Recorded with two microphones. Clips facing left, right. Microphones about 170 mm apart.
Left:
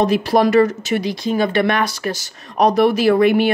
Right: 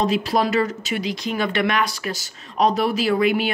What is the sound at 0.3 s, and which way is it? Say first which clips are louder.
Speech: left 7 dB; 45° left (ahead or behind).